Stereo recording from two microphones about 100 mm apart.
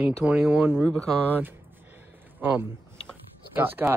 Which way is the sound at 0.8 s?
5° left (ahead or behind).